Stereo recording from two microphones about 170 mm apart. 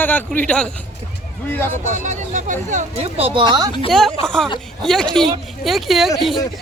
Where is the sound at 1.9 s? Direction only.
45° right (ahead or behind); by 3.7 s 25° right (ahead or behind).